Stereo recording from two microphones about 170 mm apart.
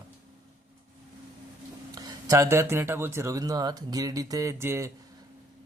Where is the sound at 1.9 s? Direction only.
25° right (ahead or behind).